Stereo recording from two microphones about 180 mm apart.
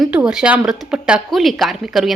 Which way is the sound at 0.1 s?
5° right (ahead or behind).